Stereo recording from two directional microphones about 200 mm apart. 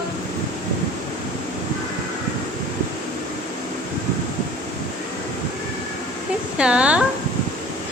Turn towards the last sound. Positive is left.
turn(degrees=-5)  # may be behind; listen again after turning